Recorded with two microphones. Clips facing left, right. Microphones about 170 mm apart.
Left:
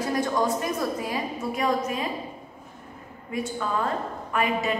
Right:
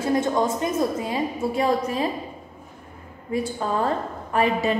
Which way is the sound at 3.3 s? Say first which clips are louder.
Right 4 dB; 30° right (ahead or behind).